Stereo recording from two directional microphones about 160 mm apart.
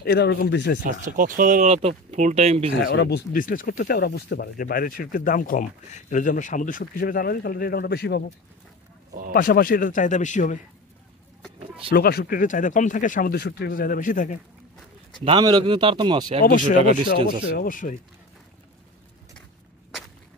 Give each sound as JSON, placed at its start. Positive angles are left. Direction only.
{"t": 0.0, "sound": "speech", "side_deg": 90}
{"t": 0.8, "sound": "speech", "side_deg": -55}
{"t": 2.9, "sound": "speech", "side_deg": 90}
{"t": 9.3, "sound": "speech", "side_deg": 65}
{"t": 11.9, "sound": "speech", "side_deg": 75}
{"t": 15.2, "sound": "a man's voice", "side_deg": -30}
{"t": 16.4, "sound": "speech", "side_deg": 55}